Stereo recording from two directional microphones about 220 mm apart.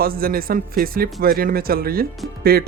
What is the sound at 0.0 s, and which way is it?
A man's voice, 40° right (ahead or behind).